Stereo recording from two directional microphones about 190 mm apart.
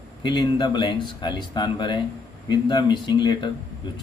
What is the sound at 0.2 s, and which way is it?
Speech, 25° left (ahead or behind).